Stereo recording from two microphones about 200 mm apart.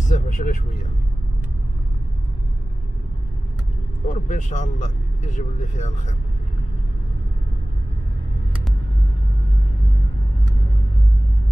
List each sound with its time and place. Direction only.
0.0 s vehicle: 40° left (ahead or behind)
4.1 s a man's voice: 40° left (ahead or behind)